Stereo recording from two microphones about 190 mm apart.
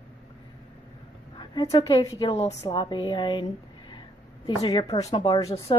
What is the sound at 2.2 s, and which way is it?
A woman's voice, 30° left (ahead or behind).